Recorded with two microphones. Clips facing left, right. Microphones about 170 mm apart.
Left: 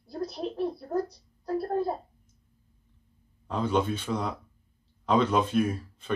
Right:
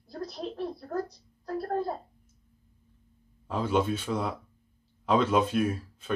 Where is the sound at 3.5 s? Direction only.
5° right (ahead or behind).